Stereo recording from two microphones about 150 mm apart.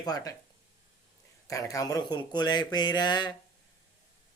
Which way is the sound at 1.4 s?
20° left (ahead or behind).